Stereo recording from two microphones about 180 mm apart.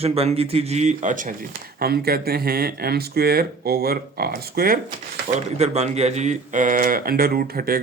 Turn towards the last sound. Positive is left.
turn(degrees=-55)  # may be behind; listen again after turning